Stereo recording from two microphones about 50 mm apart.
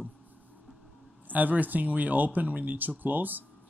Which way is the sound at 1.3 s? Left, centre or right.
Right.